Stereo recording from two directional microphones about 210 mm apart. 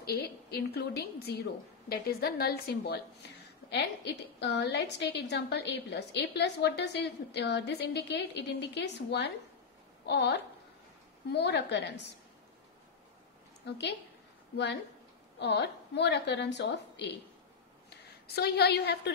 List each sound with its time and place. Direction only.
0.0 s a woman's voice: 50° left (ahead or behind)
13.7 s a woman's voice: 55° left (ahead or behind)
15.3 s a woman's voice: 55° left (ahead or behind)